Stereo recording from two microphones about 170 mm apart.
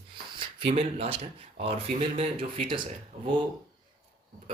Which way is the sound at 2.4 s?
30° right (ahead or behind).